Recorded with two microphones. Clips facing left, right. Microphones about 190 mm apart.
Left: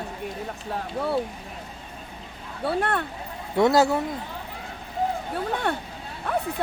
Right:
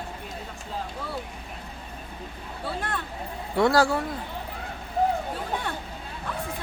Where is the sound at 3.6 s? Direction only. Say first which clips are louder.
Left 2 dB; 20° left (ahead or behind).